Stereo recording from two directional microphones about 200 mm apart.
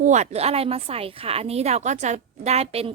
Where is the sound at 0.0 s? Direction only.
35° right (ahead or behind).